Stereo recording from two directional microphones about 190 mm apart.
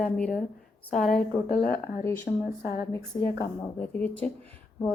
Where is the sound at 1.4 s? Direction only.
40° left (ahead or behind).